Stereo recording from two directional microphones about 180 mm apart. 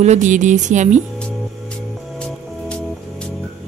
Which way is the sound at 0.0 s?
40° right (ahead or behind).